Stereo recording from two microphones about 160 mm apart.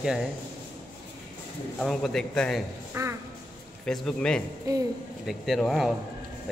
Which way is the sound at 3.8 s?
5° left (ahead or behind).